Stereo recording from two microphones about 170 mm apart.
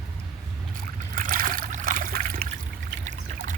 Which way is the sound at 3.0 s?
45° right (ahead or behind).